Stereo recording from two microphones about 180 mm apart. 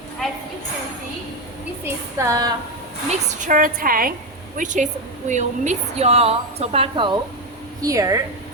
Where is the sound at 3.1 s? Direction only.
45° right (ahead or behind); by 8.2 s 20° right (ahead or behind).